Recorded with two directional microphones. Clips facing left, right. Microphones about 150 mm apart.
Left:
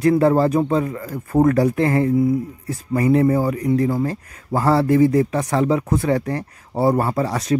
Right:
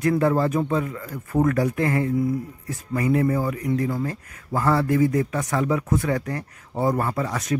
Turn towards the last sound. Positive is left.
turn(degrees=35)  # may be behind; listen again after turning